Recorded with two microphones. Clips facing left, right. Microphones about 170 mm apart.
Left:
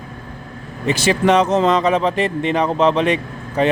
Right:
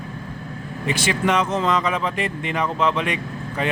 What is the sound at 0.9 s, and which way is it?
Speech, 35° left (ahead or behind).